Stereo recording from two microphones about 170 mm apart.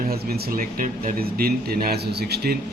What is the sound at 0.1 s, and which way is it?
A man's voice, 65° right (ahead or behind).